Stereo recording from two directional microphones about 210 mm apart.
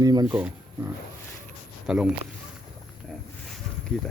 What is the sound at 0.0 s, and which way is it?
Speech, 20° right (ahead or behind).